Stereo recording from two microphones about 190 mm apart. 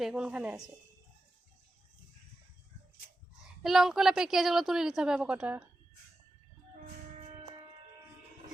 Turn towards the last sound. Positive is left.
turn(degrees=-25)  # may be behind; listen again after turning